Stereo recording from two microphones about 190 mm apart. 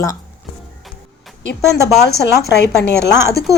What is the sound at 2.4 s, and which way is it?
Speech, 60° left (ahead or behind).